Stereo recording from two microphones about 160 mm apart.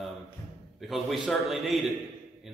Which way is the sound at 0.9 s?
Centre (ahead or behind).